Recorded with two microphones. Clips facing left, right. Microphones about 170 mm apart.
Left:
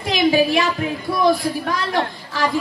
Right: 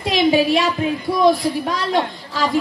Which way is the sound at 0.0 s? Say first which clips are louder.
Right 1 dB; 20° right (ahead or behind).